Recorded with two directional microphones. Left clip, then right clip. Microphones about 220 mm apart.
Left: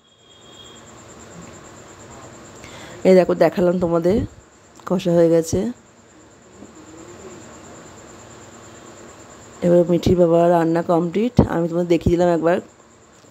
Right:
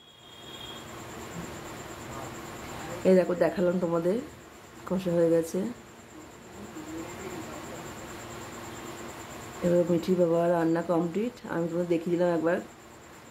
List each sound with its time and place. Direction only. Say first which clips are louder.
3.0 s a woman's voice: left 10 dB; 40° left (ahead or behind)
9.9 s a woman's voice: left 10 dB; 40° left (ahead or behind)